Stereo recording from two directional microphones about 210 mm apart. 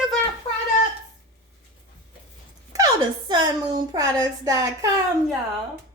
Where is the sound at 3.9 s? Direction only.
15° right (ahead or behind).